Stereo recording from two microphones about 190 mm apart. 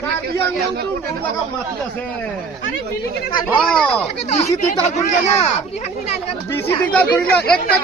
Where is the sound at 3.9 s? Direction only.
35° left (ahead or behind).